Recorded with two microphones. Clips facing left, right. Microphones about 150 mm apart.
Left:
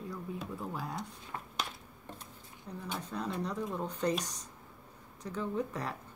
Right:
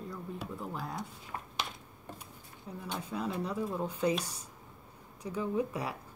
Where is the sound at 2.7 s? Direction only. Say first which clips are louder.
Right 1 dB; 5° right (ahead or behind).